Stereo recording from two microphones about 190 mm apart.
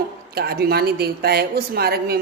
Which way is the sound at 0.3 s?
55° right (ahead or behind).